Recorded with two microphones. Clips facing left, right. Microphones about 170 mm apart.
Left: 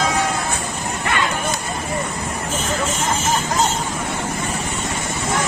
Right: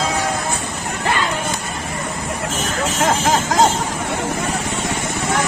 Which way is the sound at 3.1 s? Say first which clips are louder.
Right 5 dB; 90° right.